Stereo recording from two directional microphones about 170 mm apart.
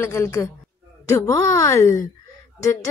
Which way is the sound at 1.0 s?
20° left (ahead or behind).